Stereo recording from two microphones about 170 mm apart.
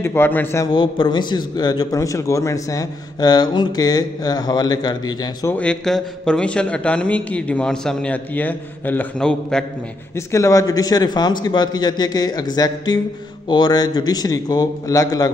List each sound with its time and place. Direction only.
0.0 s a man's voice: 15° left (ahead or behind)
0.7 s a man's voice: 30° left (ahead or behind)
5.5 s a man's voice: 5° left (ahead or behind)
10.1 s a man's voice: 15° left (ahead or behind)